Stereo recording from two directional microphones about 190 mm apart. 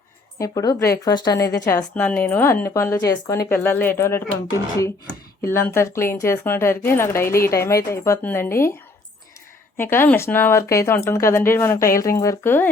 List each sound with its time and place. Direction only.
0.3 s a woman's voice: 20° left (ahead or behind)
9.7 s speech: 10° left (ahead or behind)